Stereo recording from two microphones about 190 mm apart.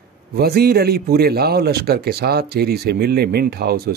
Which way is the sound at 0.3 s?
55° right (ahead or behind).